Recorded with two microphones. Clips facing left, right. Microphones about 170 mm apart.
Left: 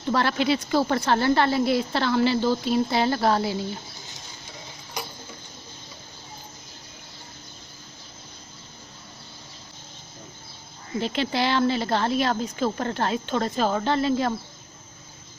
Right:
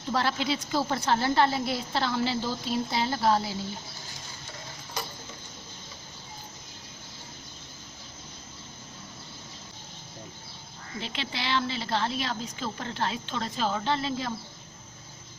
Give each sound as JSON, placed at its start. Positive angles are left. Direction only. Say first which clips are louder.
{"t": 0.1, "sound": "a woman's voice", "louder": "left 5 dB", "side_deg": 65}
{"t": 5.0, "sound": "a sound", "louder": "left 2 dB", "side_deg": 15}
{"t": 11.0, "sound": "a woman's voice", "louder": "left 10 dB", "side_deg": 45}